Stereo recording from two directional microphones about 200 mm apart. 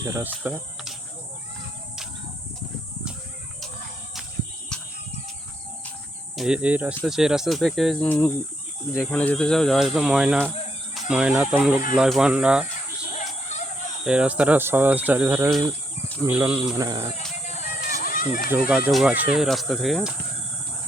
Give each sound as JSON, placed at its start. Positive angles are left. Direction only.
{"t": 0.0, "sound": "speech", "side_deg": -10}
{"t": 4.7, "sound": "a sound", "side_deg": 5}
{"t": 6.3, "sound": "speech", "side_deg": -5}
{"t": 13.5, "sound": "fowl", "side_deg": 35}
{"t": 14.0, "sound": "speech", "side_deg": -5}
{"t": 17.4, "sound": "music", "side_deg": 35}
{"t": 18.0, "sound": "a sound", "side_deg": 45}
{"t": 18.9, "sound": "speech", "side_deg": -5}